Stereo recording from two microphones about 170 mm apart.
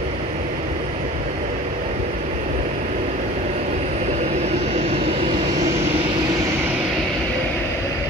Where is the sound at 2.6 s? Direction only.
45° right (ahead or behind).